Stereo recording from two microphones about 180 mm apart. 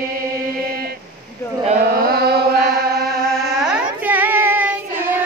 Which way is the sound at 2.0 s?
60° right (ahead or behind).